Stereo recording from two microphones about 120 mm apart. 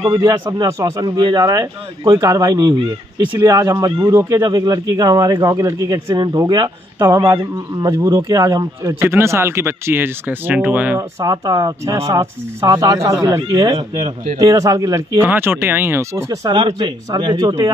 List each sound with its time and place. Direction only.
0.1 s speech: 30° right (ahead or behind)
1.0 s speech: 40° right (ahead or behind)
1.4 s speech: 30° right (ahead or behind)
7.0 s speech: 20° right (ahead or behind)
11.0 s speech: 30° right (ahead or behind)
15.1 s speech: 20° right (ahead or behind)
16.4 s speech: 40° right (ahead or behind)